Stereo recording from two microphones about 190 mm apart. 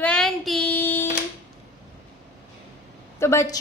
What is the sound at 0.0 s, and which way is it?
Child singing, 5° left (ahead or behind).